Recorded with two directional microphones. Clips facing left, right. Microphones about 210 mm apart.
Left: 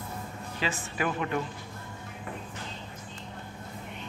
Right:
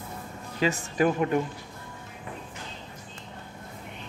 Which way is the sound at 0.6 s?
40° right (ahead or behind).